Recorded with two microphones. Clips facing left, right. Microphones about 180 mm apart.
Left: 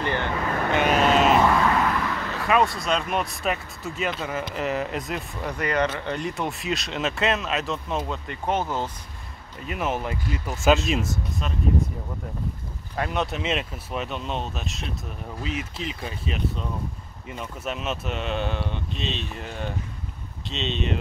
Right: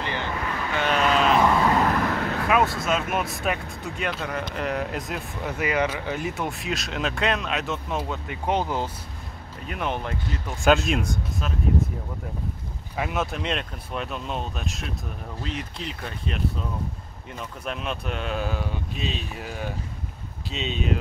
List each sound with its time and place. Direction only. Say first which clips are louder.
0.0 s vehicle: left 3 dB; 50° left (ahead or behind)
0.8 s vehicle: left 1 dB; 40° left (ahead or behind)
1.2 s vehicle: left 1 dB; 5° left (ahead or behind)
1.9 s vehicle: right 3 dB; 50° right (ahead or behind)
2.3 s speech: left 2 dB; centre (ahead or behind)
9.7 s speech: left 2 dB; 5° left (ahead or behind)
12.9 s speech: left 1 dB; 5° right (ahead or behind)